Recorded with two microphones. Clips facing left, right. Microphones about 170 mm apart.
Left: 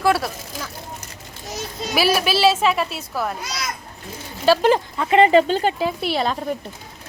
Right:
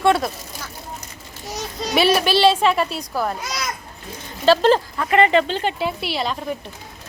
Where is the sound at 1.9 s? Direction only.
5° left (ahead or behind).